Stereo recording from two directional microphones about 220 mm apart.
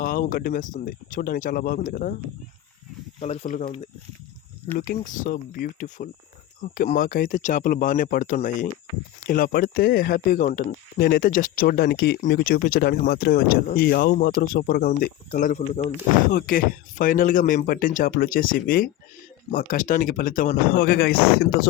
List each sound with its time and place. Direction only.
0.0 s speech: 40° left (ahead or behind)
3.2 s speech: 30° left (ahead or behind)
4.8 s speech: 35° left (ahead or behind)
6.6 s speech: 40° left (ahead or behind)